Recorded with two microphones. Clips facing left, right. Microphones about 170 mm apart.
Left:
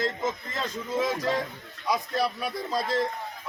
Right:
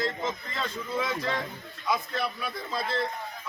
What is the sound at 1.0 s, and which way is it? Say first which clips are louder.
A man's voice: left 4 dB; 40° left (ahead or behind).